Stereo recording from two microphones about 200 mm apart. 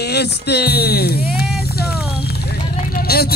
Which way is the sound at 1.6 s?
50° left (ahead or behind).